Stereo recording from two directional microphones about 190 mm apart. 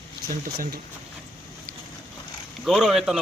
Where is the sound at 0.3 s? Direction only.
50° right (ahead or behind).